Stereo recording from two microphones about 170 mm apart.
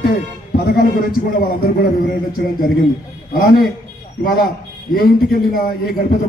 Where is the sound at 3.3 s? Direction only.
60° left (ahead or behind).